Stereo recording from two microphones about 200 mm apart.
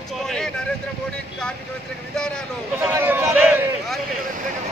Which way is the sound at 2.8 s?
10° right (ahead or behind).